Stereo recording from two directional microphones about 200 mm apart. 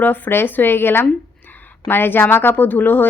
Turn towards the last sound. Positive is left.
turn(degrees=10)  # may be behind; listen again after turning